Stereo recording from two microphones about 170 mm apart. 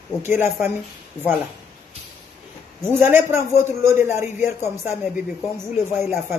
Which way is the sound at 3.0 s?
15° right (ahead or behind).